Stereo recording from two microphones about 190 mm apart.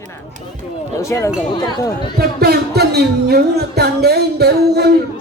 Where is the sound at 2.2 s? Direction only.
55° right (ahead or behind).